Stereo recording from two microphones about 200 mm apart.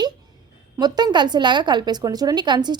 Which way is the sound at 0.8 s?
20° right (ahead or behind).